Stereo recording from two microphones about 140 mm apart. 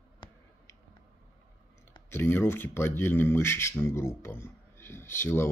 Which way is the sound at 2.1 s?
15° left (ahead or behind).